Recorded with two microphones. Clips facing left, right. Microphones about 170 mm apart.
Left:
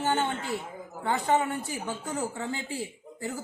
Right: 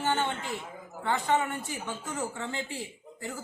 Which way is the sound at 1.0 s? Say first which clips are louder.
Left 2 dB; 35° left (ahead or behind).